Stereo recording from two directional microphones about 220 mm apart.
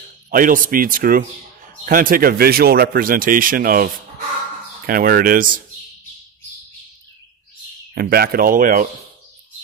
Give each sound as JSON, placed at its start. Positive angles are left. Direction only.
{"t": 0.3, "sound": "speech", "side_deg": -40}
{"t": 7.9, "sound": "speech", "side_deg": -45}